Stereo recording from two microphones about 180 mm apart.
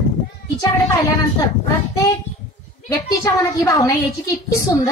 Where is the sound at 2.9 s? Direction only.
20° left (ahead or behind).